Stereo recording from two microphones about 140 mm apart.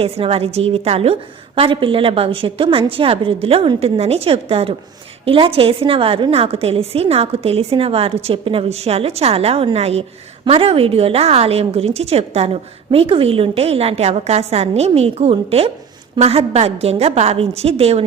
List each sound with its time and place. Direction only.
0.0 s a woman's voice: 45° right (ahead or behind)